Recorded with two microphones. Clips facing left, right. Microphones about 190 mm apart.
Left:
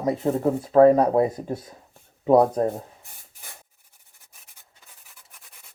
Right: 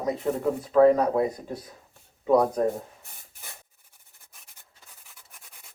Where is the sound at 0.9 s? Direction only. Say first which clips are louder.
Left 4 dB; 30° left (ahead or behind).